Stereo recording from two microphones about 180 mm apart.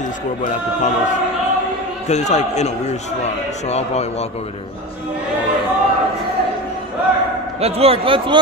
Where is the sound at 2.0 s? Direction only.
40° left (ahead or behind).